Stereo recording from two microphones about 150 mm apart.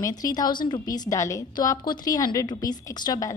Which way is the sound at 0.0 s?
25° left (ahead or behind).